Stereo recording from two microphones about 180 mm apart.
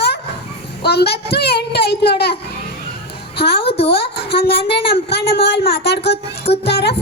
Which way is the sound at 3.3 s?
65° left (ahead or behind).